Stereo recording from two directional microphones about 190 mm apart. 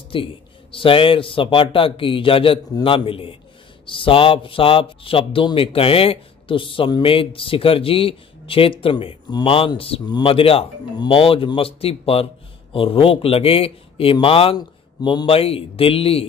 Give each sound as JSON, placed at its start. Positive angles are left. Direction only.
{"t": 0.1, "sound": "a man's voice", "side_deg": 25}